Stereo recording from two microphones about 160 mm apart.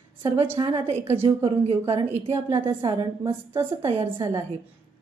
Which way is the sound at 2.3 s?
15° right (ahead or behind).